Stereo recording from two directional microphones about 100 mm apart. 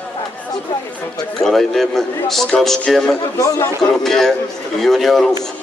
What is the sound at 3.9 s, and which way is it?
A man's voice, 5° left (ahead or behind).